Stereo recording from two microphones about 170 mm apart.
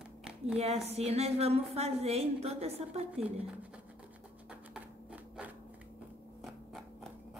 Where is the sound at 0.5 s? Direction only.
35° right (ahead or behind).